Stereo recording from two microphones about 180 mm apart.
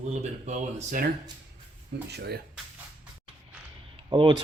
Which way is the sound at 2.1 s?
65° right (ahead or behind).